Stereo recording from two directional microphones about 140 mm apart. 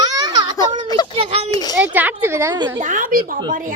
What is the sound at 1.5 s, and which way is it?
Speech, 30° left (ahead or behind).